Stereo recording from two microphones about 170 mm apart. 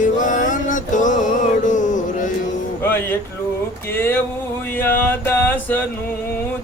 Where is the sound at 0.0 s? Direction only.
50° left (ahead or behind).